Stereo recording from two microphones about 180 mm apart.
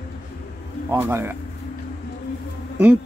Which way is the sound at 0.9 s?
15° right (ahead or behind).